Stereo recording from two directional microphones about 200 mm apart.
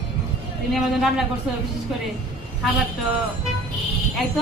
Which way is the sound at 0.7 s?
Centre (ahead or behind).